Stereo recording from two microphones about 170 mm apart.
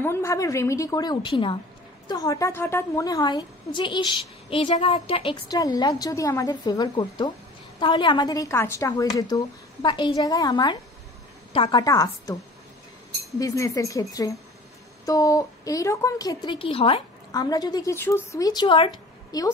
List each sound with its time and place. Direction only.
0.0 s a woman's voice: 15° left (ahead or behind); by 11.8 s 35° left (ahead or behind)
11.8 s a woman's voice: 20° left (ahead or behind)
13.4 s a woman's voice: 20° left (ahead or behind)